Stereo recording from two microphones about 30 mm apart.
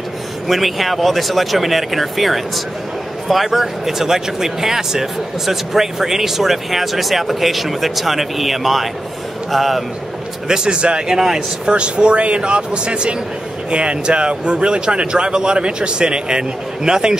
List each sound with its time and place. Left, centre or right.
0.5 s speech: centre
3.5 s speech: centre
10.5 s speech: right
11.1 s speech: centre
11.7 s speech: right